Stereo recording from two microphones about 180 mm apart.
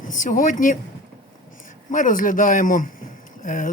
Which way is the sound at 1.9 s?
50° left (ahead or behind).